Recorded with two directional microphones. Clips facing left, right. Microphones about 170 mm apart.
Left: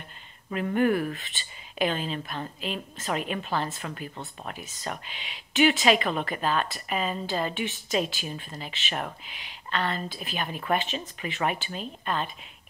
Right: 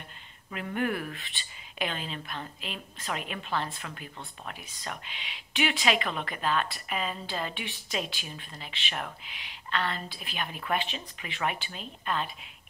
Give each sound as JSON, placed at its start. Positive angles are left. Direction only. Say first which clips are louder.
{"t": 0.5, "sound": "speech", "louder": "left 7 dB", "side_deg": 40}
{"t": 1.1, "sound": "speech", "louder": "left 3 dB", "side_deg": 0}
{"t": 1.8, "sound": "speech", "louder": "left 7 dB", "side_deg": 40}